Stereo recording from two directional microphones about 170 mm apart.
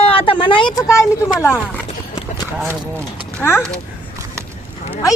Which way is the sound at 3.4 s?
15° left (ahead or behind).